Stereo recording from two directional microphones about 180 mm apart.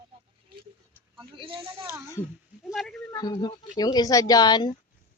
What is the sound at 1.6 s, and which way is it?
Speech, 15° right (ahead or behind).